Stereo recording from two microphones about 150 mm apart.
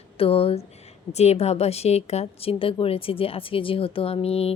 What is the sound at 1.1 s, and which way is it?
A woman's voice, 45° left (ahead or behind).